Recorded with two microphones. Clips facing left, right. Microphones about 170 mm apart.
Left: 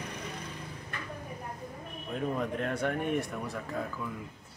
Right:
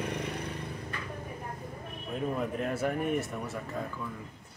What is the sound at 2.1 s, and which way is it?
Speech, 5° right (ahead or behind).